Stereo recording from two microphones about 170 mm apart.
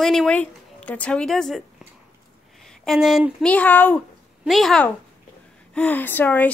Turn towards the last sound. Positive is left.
turn(degrees=10)  # may be behind; listen again after turning